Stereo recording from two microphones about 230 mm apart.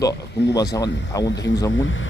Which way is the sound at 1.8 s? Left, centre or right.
Left.